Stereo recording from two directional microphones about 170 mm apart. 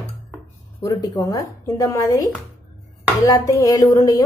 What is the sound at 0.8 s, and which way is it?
A woman's voice, 20° left (ahead or behind).